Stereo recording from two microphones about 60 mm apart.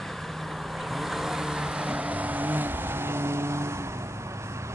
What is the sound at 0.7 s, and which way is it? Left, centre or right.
Vehicle, centre.